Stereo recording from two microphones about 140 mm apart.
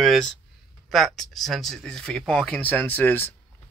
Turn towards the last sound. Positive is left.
turn(degrees=15)  # may be behind; listen again after turning